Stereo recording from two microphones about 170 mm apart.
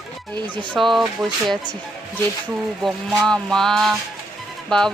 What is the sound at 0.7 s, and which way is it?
Speech, centre (ahead or behind).